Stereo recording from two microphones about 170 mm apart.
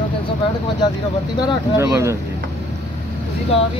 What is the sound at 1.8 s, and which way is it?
Speech, 15° right (ahead or behind).